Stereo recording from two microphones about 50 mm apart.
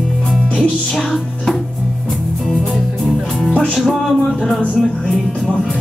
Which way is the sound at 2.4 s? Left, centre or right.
Centre.